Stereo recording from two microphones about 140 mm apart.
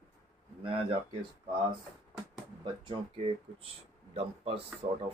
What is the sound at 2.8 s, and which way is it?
Speech, 40° right (ahead or behind).